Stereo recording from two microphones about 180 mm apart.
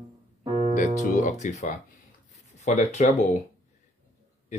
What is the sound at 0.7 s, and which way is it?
Speech, 45° left (ahead or behind).